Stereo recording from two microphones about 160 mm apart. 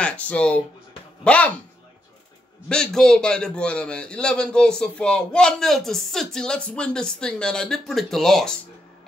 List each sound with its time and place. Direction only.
0.0 s speech: 5° left (ahead or behind)
2.7 s a man's voice: 5° left (ahead or behind)